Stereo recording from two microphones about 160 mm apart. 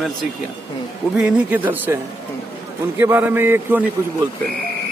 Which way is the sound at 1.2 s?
10° right (ahead or behind).